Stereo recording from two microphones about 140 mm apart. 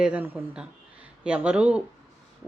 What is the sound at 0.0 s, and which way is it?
Speech, 10° right (ahead or behind).